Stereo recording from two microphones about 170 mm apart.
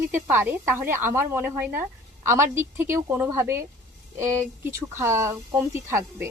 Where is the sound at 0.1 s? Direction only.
15° right (ahead or behind).